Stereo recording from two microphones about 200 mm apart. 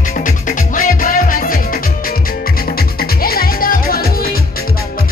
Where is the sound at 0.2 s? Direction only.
40° left (ahead or behind).